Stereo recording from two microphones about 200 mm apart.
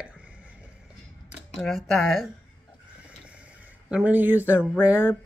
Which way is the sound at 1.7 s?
Centre (ahead or behind).